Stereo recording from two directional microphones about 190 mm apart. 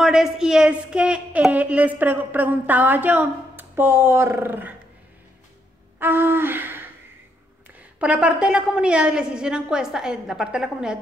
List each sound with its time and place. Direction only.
0.0 s a woman's voice: 5° right (ahead or behind)
5.9 s a sound: 10° right (ahead or behind)
8.0 s a woman's voice: 5° right (ahead or behind)